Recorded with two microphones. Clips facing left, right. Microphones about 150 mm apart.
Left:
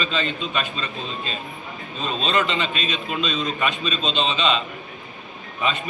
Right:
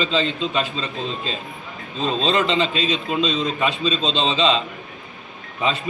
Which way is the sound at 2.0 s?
30° right (ahead or behind).